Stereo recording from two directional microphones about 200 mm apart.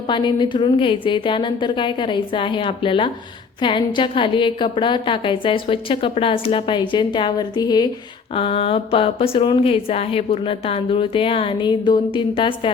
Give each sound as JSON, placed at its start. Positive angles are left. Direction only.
{"t": 0.1, "sound": "speech", "side_deg": 25}